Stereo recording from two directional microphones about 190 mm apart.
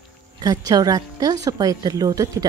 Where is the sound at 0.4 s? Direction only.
20° right (ahead or behind).